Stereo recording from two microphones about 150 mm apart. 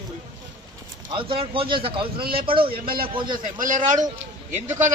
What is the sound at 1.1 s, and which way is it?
Speech, 35° right (ahead or behind).